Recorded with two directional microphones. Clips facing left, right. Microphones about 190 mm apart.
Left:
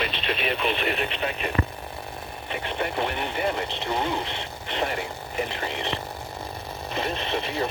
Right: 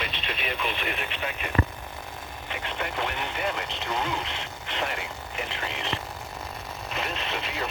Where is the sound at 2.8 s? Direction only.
30° left (ahead or behind).